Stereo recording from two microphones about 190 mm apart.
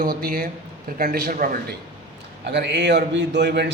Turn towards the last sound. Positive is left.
turn(degrees=-60)  # may be behind; listen again after turning